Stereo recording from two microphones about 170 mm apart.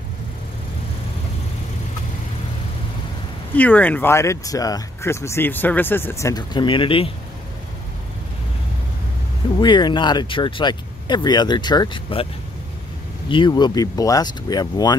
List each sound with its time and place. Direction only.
3.5 s speech: 10° left (ahead or behind); by 7.1 s 30° left (ahead or behind)
9.6 s speech: 25° left (ahead or behind)
13.3 s speech: 25° left (ahead or behind)